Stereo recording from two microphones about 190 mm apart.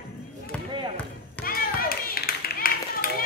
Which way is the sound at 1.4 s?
50° left (ahead or behind).